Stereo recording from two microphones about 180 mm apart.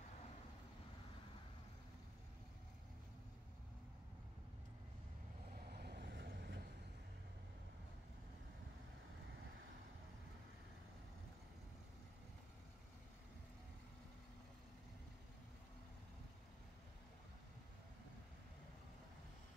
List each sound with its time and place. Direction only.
5.7 s vehicle: 60° right (ahead or behind)